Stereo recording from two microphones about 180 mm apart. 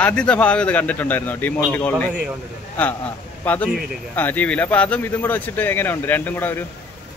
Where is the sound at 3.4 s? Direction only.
10° left (ahead or behind).